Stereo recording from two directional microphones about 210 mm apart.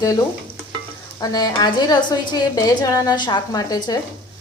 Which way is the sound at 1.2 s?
20° left (ahead or behind).